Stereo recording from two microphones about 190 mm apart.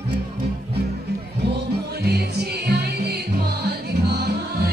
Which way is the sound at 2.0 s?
60° right (ahead or behind).